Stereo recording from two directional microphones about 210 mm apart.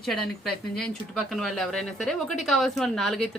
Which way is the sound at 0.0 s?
Centre (ahead or behind).